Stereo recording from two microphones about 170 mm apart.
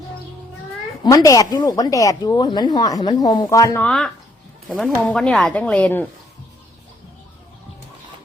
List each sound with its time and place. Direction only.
1.0 s speech: 20° left (ahead or behind)
3.8 s speech: centre (ahead or behind)